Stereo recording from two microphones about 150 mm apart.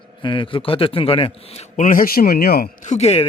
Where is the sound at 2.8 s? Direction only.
45° left (ahead or behind).